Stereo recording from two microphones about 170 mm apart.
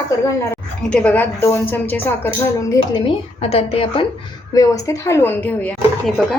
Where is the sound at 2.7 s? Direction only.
30° left (ahead or behind).